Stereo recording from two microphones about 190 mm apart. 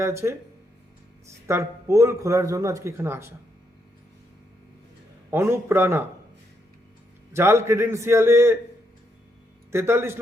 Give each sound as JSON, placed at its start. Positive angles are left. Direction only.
{"t": 0.0, "sound": "a man's voice", "side_deg": -15}
{"t": 1.5, "sound": "a man's voice", "side_deg": -15}
{"t": 5.3, "sound": "a man's voice", "side_deg": -15}
{"t": 7.3, "sound": "a man's voice", "side_deg": -15}
{"t": 9.7, "sound": "a man's voice", "side_deg": -15}